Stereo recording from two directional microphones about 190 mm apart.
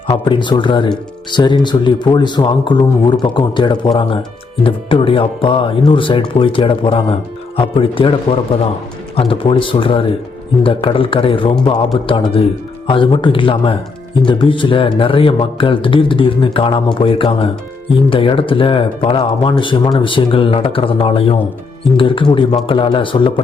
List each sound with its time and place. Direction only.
0.1 s speech: 25° left (ahead or behind)
9.1 s speech: 30° left (ahead or behind)